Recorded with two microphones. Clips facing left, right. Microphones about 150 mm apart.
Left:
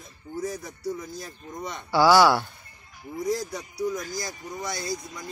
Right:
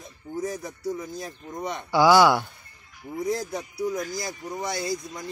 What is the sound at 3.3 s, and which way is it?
Speech, 55° right (ahead or behind).